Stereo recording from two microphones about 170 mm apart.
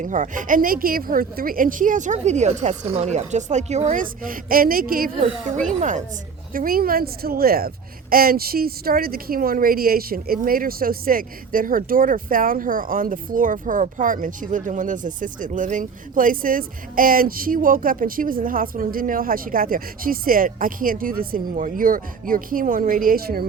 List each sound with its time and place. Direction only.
0.0 s speech: 50° right (ahead or behind)
5.2 s speech: 45° right (ahead or behind); by 23.5 s 60° right (ahead or behind)